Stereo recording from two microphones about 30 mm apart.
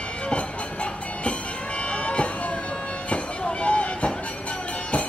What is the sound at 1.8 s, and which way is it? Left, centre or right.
Vehicle, left.